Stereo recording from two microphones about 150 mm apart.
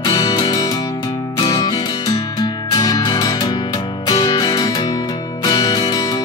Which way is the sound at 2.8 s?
25° left (ahead or behind).